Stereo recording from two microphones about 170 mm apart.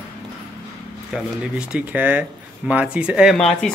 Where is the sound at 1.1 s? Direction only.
5° right (ahead or behind).